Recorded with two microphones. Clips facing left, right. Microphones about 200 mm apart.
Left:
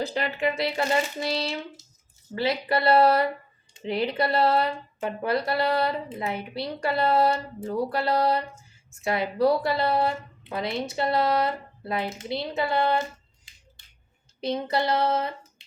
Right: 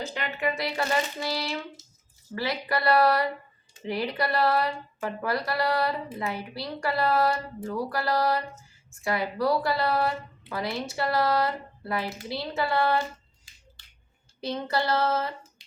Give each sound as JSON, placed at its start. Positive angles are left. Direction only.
{"t": 0.0, "sound": "speech", "side_deg": 35}
{"t": 14.4, "sound": "child singing", "side_deg": 20}